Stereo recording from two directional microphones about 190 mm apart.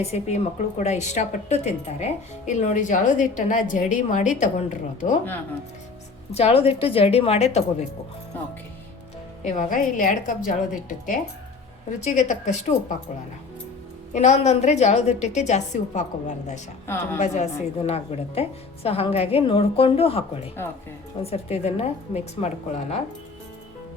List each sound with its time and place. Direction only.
0.0 s a woman's voice: 35° left (ahead or behind)
6.3 s a woman's voice: 30° left (ahead or behind)
9.4 s a woman's voice: 40° left (ahead or behind)
14.1 s a woman's voice: 40° left (ahead or behind)
16.8 s a woman's voice: 15° left (ahead or behind)
17.2 s a woman's voice: 35° left (ahead or behind)